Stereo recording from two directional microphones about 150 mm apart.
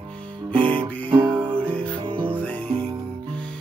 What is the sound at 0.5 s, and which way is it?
Music, 35° right (ahead or behind).